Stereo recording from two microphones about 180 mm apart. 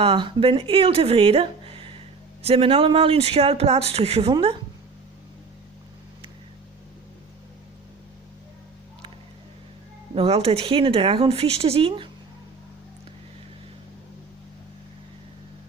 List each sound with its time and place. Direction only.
0.0 s speech: 30° right (ahead or behind)
10.2 s speech: 35° right (ahead or behind)